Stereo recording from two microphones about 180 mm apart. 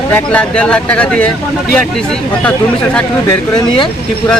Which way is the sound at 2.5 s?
5° left (ahead or behind).